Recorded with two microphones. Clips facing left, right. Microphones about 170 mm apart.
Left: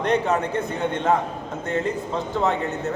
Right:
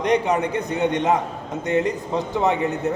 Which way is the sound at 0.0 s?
15° right (ahead or behind).